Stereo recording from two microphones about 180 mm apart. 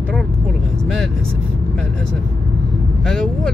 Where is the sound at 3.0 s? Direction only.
Centre (ahead or behind).